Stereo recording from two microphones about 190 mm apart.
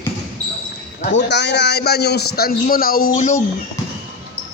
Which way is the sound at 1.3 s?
65° left (ahead or behind).